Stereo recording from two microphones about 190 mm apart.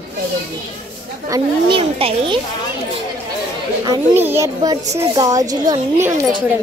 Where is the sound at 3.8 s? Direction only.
15° right (ahead or behind).